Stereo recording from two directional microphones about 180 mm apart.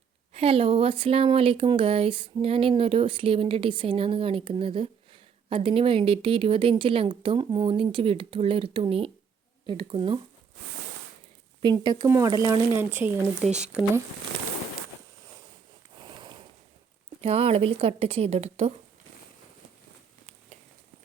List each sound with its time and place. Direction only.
0.3 s speech: 30° right (ahead or behind)
11.6 s speech: 25° right (ahead or behind)
13.4 s speech: 40° right (ahead or behind)
16.0 s sniff: 25° right (ahead or behind)
17.2 s speech: 35° right (ahead or behind)